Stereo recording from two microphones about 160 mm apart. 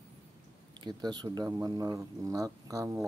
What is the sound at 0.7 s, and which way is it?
Speech, 25° right (ahead or behind).